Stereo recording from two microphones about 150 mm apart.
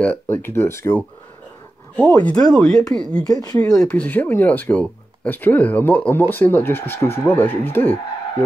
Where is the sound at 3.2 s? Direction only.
25° left (ahead or behind).